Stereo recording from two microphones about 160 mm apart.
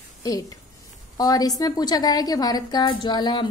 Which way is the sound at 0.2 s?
20° left (ahead or behind).